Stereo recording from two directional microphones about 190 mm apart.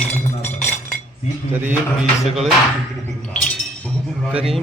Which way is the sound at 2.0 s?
Centre (ahead or behind).